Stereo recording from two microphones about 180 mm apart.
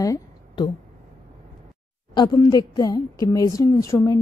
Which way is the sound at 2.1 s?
25° left (ahead or behind).